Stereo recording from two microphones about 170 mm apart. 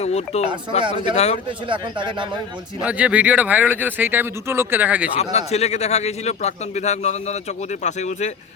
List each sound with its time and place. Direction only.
0.0 s a man's voice: 40° left (ahead or behind)
0.9 s speech: 30° right (ahead or behind)
1.1 s a man's voice: 40° left (ahead or behind)
1.5 s speech: 30° right (ahead or behind)
2.8 s speech: 5° right (ahead or behind)
5.1 s a man's voice: 40° left (ahead or behind)